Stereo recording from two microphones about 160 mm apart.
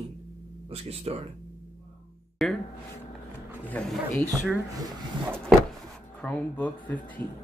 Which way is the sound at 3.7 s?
5° left (ahead or behind).